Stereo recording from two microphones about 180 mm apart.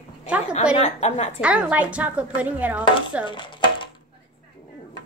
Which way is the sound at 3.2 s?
25° left (ahead or behind).